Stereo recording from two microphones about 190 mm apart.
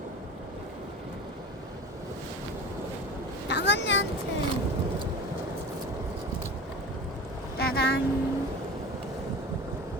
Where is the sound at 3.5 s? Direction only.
65° left (ahead or behind).